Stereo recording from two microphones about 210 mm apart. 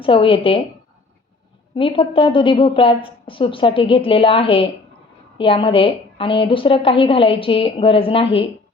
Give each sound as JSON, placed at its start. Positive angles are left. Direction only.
{"t": 0.0, "sound": "a woman's voice", "side_deg": 25}
{"t": 1.7, "sound": "a woman's voice", "side_deg": 25}